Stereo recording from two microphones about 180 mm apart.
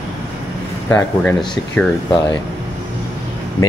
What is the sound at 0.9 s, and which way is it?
Speech, 10° left (ahead or behind).